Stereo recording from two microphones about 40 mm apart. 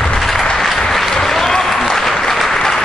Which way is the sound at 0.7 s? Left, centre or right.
Centre.